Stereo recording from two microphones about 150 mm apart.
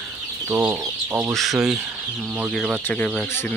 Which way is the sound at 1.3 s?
Centre (ahead or behind).